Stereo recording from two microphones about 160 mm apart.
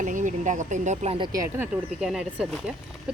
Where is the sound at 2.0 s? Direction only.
Centre (ahead or behind).